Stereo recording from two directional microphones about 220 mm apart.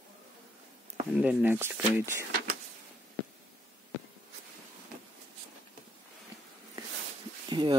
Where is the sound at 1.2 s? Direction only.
10° right (ahead or behind).